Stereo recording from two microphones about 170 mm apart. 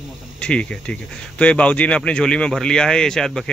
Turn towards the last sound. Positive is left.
turn(degrees=5)  # may be behind; listen again after turning